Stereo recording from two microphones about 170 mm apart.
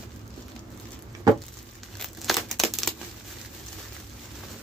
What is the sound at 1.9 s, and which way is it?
Crumpling, centre (ahead or behind).